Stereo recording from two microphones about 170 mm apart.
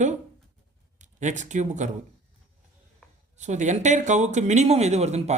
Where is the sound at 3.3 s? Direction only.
45° right (ahead or behind).